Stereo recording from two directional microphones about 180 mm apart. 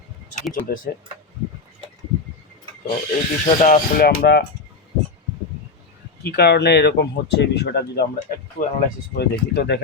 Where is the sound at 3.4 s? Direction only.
45° left (ahead or behind); by 4.4 s 65° left (ahead or behind).